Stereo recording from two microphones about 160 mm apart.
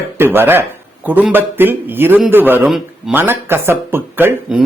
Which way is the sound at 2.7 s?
Centre (ahead or behind).